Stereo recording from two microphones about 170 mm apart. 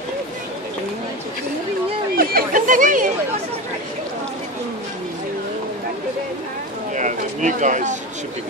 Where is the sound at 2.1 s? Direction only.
55° right (ahead or behind).